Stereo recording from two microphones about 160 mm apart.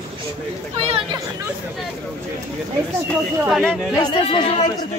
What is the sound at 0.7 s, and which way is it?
Speech, 40° right (ahead or behind).